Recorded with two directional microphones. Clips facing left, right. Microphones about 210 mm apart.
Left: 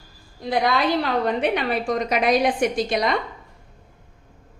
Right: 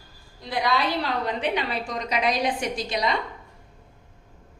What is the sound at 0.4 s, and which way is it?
A woman's voice, 50° left (ahead or behind).